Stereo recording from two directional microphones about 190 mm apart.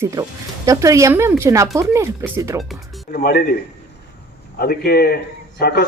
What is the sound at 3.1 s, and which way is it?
Speech, 50° left (ahead or behind).